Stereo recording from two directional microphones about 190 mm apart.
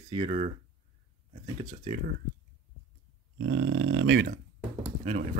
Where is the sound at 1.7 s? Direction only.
40° right (ahead or behind).